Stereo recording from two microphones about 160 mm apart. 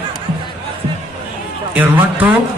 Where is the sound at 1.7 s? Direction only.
10° right (ahead or behind).